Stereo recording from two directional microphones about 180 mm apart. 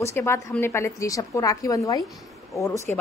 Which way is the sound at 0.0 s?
15° left (ahead or behind).